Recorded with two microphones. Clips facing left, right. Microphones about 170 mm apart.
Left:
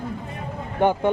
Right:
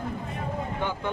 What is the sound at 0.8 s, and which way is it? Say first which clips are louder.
Speech: left 13 dB; 55° left (ahead or behind).